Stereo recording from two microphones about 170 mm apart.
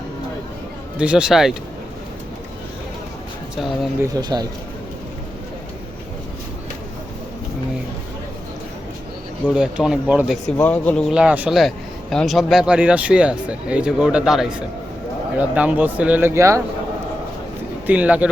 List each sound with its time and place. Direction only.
0.9 s speech: 5° right (ahead or behind)
4.1 s speech: 25° right (ahead or behind)
9.4 s speech: 5° right (ahead or behind)
10.6 s speech: 10° left (ahead or behind)
11.1 s speech: 5° right (ahead or behind)
17.8 s speech: 10° right (ahead or behind)